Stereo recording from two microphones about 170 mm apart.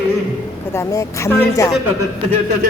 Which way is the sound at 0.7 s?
15° left (ahead or behind).